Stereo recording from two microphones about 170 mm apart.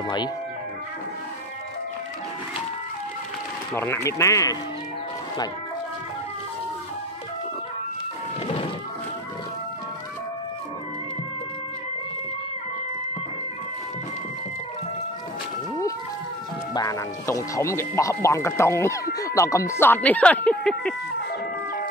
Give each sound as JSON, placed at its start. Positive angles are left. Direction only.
{"t": 0.0, "sound": "speech", "side_deg": 25}
{"t": 3.7, "sound": "speech", "side_deg": 15}
{"t": 16.7, "sound": "speech", "side_deg": 20}